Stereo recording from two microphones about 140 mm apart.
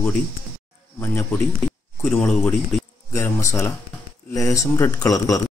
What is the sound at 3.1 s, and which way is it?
Speech, 20° left (ahead or behind).